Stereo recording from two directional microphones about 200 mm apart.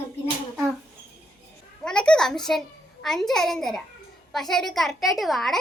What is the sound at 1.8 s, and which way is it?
A child's voice, 5° left (ahead or behind).